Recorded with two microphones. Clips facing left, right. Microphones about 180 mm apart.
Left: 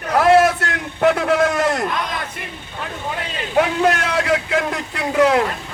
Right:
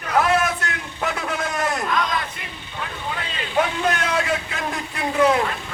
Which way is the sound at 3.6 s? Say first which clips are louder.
Left 5 dB; 70° left (ahead or behind).